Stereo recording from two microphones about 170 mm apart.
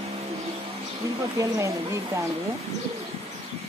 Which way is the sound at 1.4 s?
20° right (ahead or behind).